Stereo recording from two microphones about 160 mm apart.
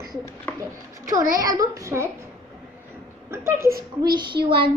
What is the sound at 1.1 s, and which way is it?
Speech, 55° right (ahead or behind).